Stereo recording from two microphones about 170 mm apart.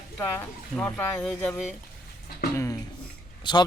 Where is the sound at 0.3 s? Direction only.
10° left (ahead or behind).